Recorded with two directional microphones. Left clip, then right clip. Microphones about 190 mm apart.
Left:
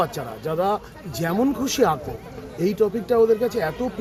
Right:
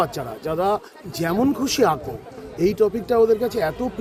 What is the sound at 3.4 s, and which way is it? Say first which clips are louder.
Speech: right 1 dB; 40° right (ahead or behind).